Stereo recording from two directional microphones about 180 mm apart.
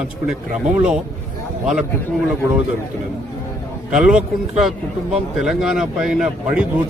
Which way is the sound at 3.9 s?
5° right (ahead or behind).